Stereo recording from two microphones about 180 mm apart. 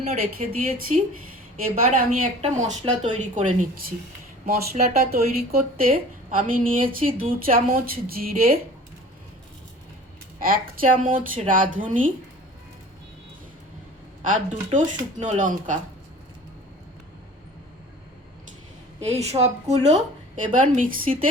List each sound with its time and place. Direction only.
0.4 s speech: 35° right (ahead or behind)
1.6 s speech: 50° right (ahead or behind)
11.0 s speech: 50° right (ahead or behind)
14.2 s speech: 45° right (ahead or behind)
19.0 s speech: 35° right (ahead or behind)